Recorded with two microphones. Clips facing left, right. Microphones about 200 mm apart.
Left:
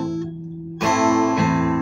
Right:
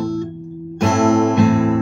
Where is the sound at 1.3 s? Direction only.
35° right (ahead or behind).